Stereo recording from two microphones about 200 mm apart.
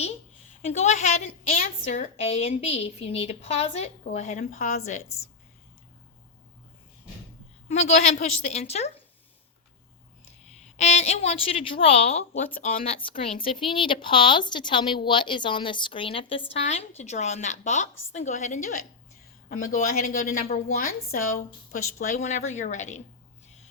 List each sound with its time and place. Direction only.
0.6 s a woman's voice: 35° left (ahead or behind)
7.7 s a woman's voice: 35° left (ahead or behind)
10.6 s a woman's voice: 35° left (ahead or behind)
12.5 s speech: 45° left (ahead or behind)
13.2 s a woman's voice: 25° left (ahead or behind)
19.7 s a woman's voice: 45° left (ahead or behind)